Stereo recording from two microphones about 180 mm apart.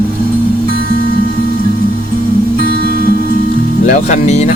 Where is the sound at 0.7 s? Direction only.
55° right (ahead or behind).